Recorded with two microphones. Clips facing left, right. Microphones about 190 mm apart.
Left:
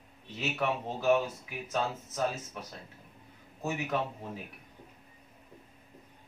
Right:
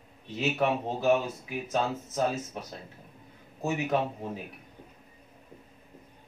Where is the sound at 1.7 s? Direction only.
30° right (ahead or behind).